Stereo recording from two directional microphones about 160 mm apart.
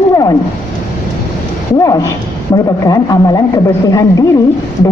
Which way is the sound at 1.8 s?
20° left (ahead or behind).